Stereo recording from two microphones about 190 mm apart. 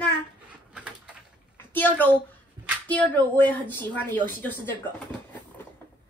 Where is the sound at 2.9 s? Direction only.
10° left (ahead or behind).